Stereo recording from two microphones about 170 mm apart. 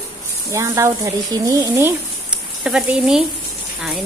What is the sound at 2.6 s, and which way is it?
Speech, 5° right (ahead or behind).